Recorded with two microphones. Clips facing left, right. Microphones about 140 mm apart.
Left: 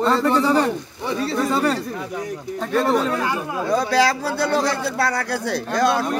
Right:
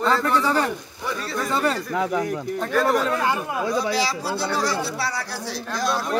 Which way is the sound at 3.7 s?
55° left (ahead or behind).